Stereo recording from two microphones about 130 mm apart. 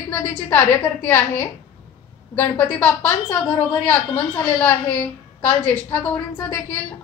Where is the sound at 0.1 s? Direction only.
15° left (ahead or behind).